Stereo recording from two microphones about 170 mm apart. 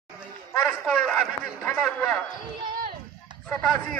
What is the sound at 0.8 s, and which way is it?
A man's voice, 5° left (ahead or behind).